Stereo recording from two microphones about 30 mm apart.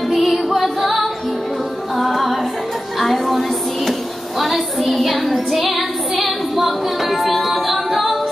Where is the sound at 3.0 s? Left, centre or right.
Centre.